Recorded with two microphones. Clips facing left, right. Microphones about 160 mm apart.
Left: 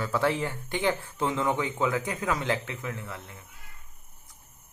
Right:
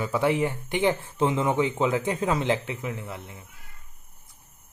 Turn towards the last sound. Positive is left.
turn(degrees=-20)  # may be behind; listen again after turning